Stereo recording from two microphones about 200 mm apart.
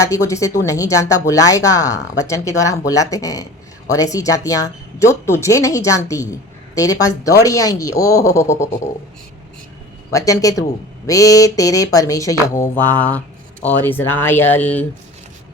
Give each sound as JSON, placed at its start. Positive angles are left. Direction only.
{"t": 0.0, "sound": "speech", "side_deg": 15}
{"t": 10.1, "sound": "speech", "side_deg": 15}